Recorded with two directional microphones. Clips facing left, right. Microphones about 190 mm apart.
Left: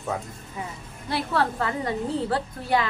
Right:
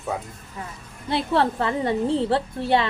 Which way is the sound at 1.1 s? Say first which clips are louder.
Right 4 dB; 25° right (ahead or behind).